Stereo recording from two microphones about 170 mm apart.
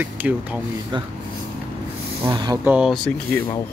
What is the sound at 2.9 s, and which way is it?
Speech, 5° left (ahead or behind).